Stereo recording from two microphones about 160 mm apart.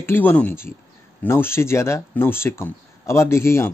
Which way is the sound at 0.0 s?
10° left (ahead or behind).